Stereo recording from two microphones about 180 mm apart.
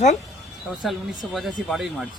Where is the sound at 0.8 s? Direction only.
Centre (ahead or behind).